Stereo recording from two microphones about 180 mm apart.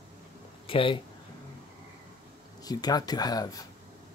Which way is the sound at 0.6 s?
30° left (ahead or behind).